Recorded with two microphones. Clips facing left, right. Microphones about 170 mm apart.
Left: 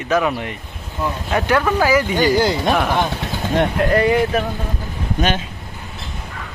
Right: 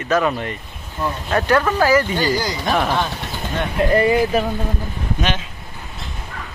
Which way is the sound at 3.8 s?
Centre (ahead or behind).